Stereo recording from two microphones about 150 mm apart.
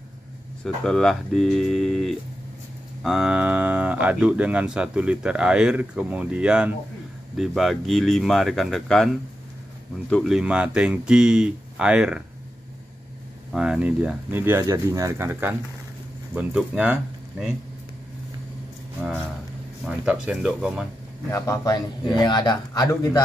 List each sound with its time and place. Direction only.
0.8 s speech: centre (ahead or behind)
13.5 s speech: 5° right (ahead or behind)
19.8 s speech: 5° right (ahead or behind)
21.3 s a man's voice: 20° left (ahead or behind)